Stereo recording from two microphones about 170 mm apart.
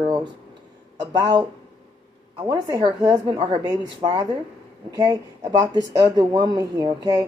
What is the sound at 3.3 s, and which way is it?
Speech, 30° right (ahead or behind).